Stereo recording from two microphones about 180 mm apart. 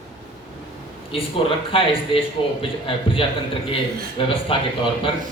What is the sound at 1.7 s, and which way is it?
Speech, 30° left (ahead or behind).